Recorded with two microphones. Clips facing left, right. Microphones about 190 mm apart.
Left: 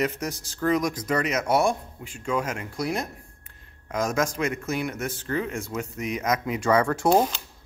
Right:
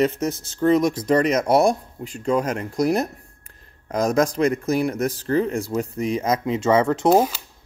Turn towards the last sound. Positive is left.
turn(degrees=-5)  # may be behind; listen again after turning